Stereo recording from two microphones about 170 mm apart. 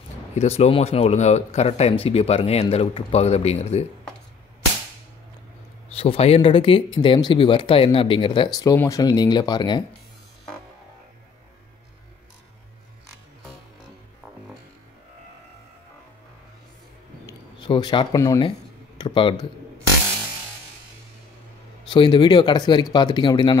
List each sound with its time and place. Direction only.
0.4 s speech: 40° left (ahead or behind)
5.9 s speech: 35° left (ahead or behind)
8.5 s speech: 20° left (ahead or behind)
17.3 s speech: 25° left (ahead or behind)
21.9 s speech: 25° left (ahead or behind)